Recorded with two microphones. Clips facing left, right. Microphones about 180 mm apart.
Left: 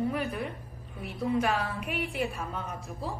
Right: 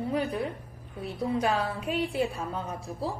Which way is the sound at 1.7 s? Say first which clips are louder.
Right 4 dB; 25° right (ahead or behind).